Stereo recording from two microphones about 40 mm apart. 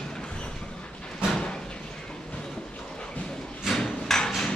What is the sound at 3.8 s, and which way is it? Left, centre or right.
Hammer, centre.